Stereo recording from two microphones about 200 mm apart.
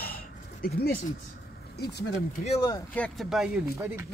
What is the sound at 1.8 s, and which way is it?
Speech, 55° left (ahead or behind).